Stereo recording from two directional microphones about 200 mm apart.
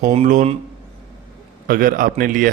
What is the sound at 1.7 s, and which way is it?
Speech, 45° right (ahead or behind).